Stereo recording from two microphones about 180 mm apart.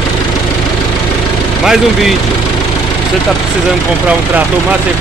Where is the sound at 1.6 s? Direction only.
5° right (ahead or behind).